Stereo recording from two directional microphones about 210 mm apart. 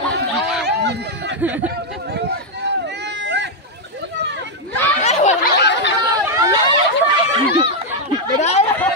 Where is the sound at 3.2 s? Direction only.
55° right (ahead or behind).